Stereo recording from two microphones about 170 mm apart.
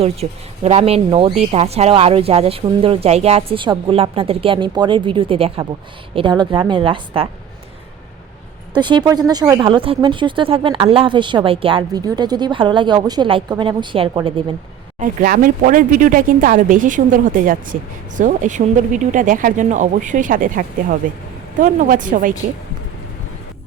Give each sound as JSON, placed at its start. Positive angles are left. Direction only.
{"t": 0.0, "sound": "speech", "side_deg": -35}
{"t": 8.7, "sound": "speech", "side_deg": -25}
{"t": 14.9, "sound": "speech", "side_deg": -50}